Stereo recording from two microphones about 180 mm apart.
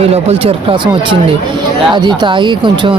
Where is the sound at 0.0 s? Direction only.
35° right (ahead or behind).